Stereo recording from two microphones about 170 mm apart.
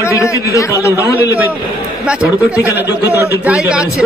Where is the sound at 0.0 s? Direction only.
15° left (ahead or behind).